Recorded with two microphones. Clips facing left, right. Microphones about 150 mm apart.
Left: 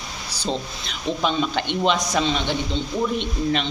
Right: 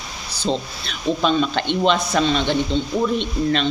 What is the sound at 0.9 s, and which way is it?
A man's voice, 15° left (ahead or behind).